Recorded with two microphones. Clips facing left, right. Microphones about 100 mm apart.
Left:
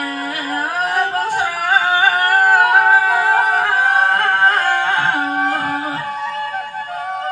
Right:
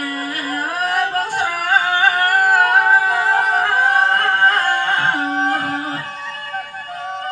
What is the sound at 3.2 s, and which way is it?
Music, 45° left (ahead or behind).